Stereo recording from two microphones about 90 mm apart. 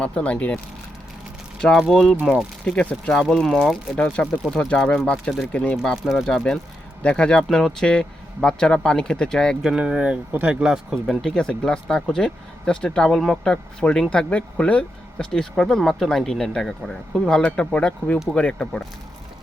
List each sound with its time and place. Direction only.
0.0 s speech: 15° left (ahead or behind)
1.7 s speech: 5° right (ahead or behind)
9.6 s speech: 10° right (ahead or behind)
11.0 s speech: 5° left (ahead or behind)